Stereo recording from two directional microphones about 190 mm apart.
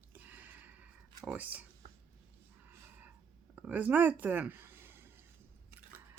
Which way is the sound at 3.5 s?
10° right (ahead or behind).